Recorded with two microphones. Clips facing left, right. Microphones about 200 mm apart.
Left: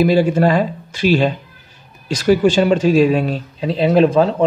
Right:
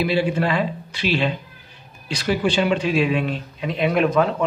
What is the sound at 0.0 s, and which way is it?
A man's voice, 45° left (ahead or behind).